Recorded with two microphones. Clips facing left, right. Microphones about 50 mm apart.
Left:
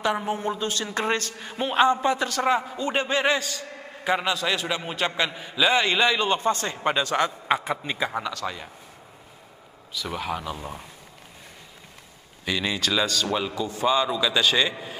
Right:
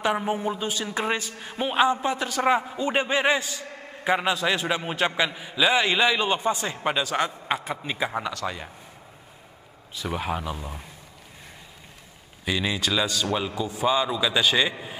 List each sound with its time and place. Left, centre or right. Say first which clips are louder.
0.0 s a man's voice: right 1 dB; centre
10.1 s a man's voice: right 1 dB; centre
12.4 s a man's voice: even; centre